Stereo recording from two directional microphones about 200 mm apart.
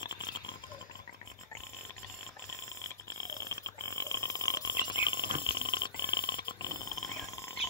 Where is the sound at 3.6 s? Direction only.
15° left (ahead or behind).